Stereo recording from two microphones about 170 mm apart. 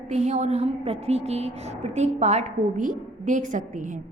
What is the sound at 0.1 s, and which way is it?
A woman's voice, 40° right (ahead or behind).